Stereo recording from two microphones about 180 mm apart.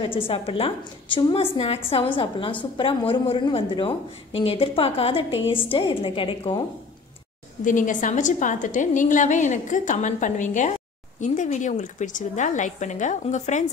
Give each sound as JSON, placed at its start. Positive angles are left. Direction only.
{"t": 0.3, "sound": "a woman's voice", "side_deg": 30}
{"t": 7.6, "sound": "a woman's voice", "side_deg": 45}